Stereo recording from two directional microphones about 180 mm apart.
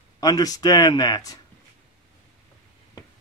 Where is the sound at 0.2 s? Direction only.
20° left (ahead or behind).